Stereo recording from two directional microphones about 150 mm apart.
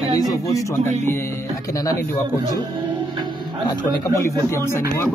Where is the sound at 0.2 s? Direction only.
25° left (ahead or behind).